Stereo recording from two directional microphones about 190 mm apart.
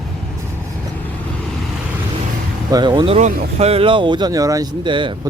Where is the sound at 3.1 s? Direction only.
35° right (ahead or behind).